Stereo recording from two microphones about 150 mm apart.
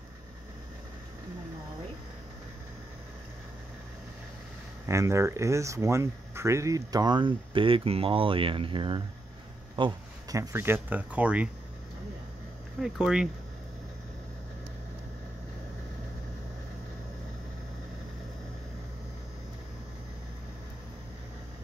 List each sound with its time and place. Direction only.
4.8 s speech: 20° right (ahead or behind)
12.8 s speech: 5° right (ahead or behind)